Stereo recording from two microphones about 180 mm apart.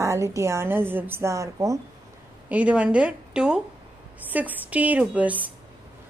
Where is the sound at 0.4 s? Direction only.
15° right (ahead or behind).